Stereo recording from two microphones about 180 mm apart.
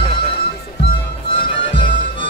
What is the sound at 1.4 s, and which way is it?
Music, 30° left (ahead or behind).